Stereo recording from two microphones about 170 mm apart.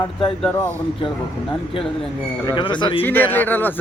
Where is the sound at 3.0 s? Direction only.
10° left (ahead or behind).